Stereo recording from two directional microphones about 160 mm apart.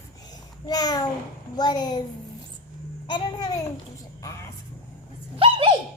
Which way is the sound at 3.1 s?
25° left (ahead or behind).